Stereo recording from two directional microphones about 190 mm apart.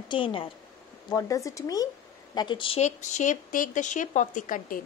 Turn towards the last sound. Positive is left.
turn(degrees=45)  # may be behind; listen again after turning